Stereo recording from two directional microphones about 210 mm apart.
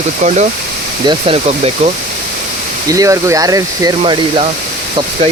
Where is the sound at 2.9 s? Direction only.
15° right (ahead or behind).